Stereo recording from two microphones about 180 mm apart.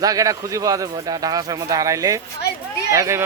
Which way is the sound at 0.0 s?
20° right (ahead or behind).